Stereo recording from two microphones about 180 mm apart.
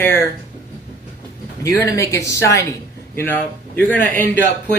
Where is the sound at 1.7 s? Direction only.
20° left (ahead or behind).